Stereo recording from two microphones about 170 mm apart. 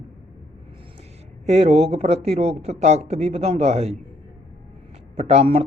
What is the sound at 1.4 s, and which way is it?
A man's voice, 40° right (ahead or behind).